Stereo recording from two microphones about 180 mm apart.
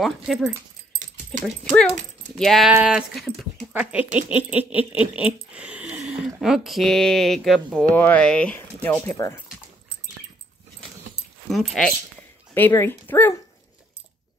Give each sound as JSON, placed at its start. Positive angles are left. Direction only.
{"t": 0.0, "sound": "speech", "side_deg": 0}
{"t": 1.6, "sound": "speech", "side_deg": 5}
{"t": 4.3, "sound": "baby laughter", "side_deg": -10}
{"t": 5.1, "sound": "speech", "side_deg": -5}
{"t": 11.4, "sound": "speech", "side_deg": 0}